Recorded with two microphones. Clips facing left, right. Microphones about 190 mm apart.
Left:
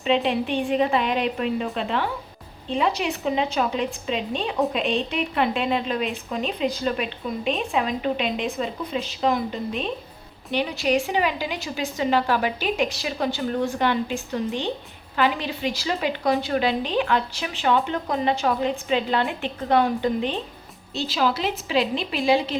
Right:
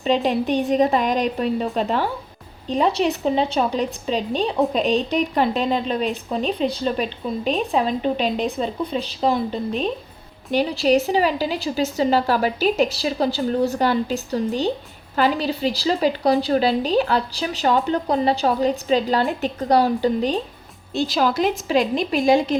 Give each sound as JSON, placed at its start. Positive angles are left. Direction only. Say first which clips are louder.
{"t": 0.0, "sound": "a woman's voice", "louder": "right 2 dB", "side_deg": -40}